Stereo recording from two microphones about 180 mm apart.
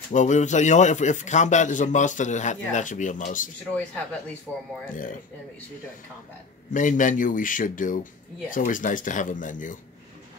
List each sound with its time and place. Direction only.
0.1 s a man's voice: 40° left (ahead or behind)
4.9 s a man's voice: 45° left (ahead or behind)
6.7 s a man's voice: 45° left (ahead or behind)